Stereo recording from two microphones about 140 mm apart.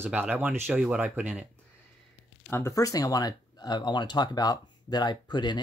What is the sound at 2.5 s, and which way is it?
Speech, 20° left (ahead or behind).